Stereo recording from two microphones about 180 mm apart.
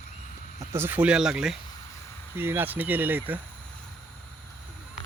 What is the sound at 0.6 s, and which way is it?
Speech, 10° right (ahead or behind).